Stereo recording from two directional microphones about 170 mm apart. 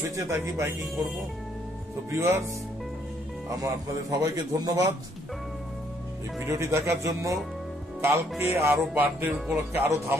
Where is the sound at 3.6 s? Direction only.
20° right (ahead or behind).